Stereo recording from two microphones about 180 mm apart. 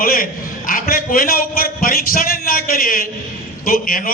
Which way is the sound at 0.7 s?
50° left (ahead or behind).